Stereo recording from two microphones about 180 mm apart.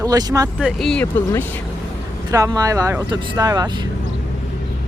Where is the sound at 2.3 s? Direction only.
20° right (ahead or behind).